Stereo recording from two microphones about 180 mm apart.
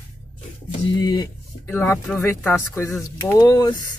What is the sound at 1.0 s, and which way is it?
Speech, 20° left (ahead or behind).